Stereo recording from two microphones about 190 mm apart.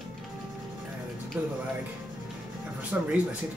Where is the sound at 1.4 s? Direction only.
10° right (ahead or behind).